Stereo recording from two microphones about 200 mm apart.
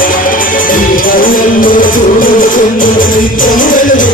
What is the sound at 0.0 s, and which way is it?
Music, 45° left (ahead or behind).